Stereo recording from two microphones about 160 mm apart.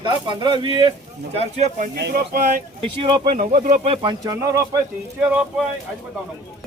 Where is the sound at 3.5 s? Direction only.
60° right (ahead or behind).